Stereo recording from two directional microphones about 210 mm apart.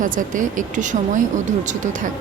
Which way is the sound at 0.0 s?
40° right (ahead or behind).